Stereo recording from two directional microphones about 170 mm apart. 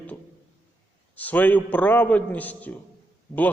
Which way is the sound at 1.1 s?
10° left (ahead or behind).